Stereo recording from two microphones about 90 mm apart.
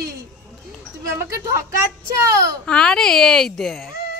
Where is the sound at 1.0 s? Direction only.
35° right (ahead or behind).